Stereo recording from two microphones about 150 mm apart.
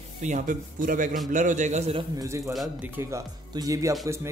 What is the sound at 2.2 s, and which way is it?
A man's voice, 20° right (ahead or behind).